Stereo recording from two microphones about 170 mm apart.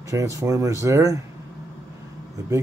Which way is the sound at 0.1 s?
20° right (ahead or behind).